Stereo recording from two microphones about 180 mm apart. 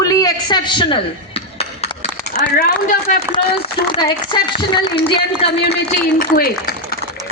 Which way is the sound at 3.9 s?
25° left (ahead or behind).